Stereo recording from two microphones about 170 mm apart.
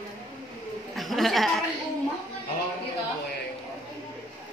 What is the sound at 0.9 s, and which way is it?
Speech, centre (ahead or behind).